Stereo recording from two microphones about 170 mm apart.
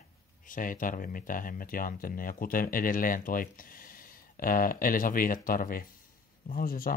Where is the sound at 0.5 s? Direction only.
55° left (ahead or behind).